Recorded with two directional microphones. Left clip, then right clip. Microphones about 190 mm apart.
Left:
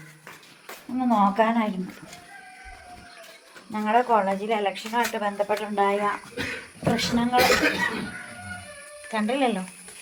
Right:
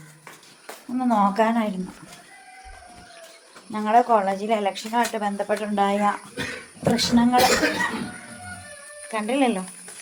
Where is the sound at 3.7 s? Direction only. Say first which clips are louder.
Right 3 dB; 10° right (ahead or behind).